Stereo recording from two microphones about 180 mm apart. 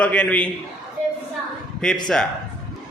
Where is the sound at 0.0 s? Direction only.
10° left (ahead or behind).